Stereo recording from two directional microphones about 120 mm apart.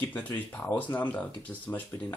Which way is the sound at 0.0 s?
10° left (ahead or behind).